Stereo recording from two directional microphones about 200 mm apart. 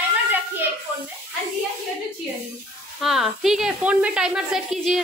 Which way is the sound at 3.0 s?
Centre (ahead or behind).